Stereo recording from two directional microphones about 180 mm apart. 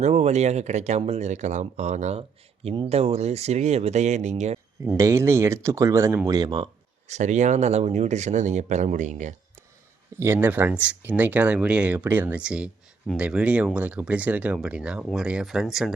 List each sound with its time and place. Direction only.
0.0 s speech: 40° right (ahead or behind)
4.9 s speech: 15° right (ahead or behind)
7.1 s speech: 40° right (ahead or behind)
10.2 s speech: 15° right (ahead or behind)